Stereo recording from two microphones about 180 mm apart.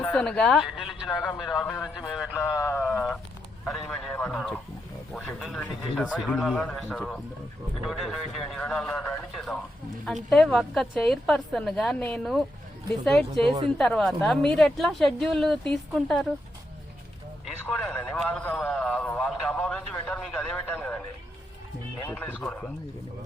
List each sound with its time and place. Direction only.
0.0 s a man's voice: 10° left (ahead or behind)
13.4 s a woman's voice: 30° right (ahead or behind)
13.7 s a woman's voice: centre (ahead or behind)
17.4 s a man's voice: 5° left (ahead or behind)
22.0 s a woman's voice: 10° left (ahead or behind)